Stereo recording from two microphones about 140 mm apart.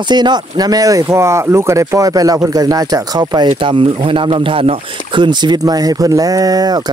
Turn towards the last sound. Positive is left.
turn(degrees=-30)  # may be behind; listen again after turning